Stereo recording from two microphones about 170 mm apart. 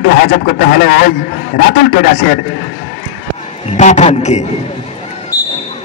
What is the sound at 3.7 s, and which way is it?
Speech, 45° left (ahead or behind).